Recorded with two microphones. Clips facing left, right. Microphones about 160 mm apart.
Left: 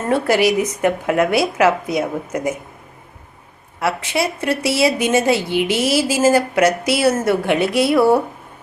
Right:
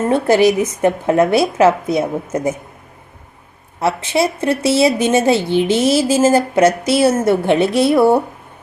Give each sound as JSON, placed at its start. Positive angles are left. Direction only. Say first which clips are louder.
{"t": 0.1, "sound": "a woman's voice", "louder": "right 2 dB", "side_deg": -25}
{"t": 3.8, "sound": "a woman's voice", "louder": "right 4 dB", "side_deg": -25}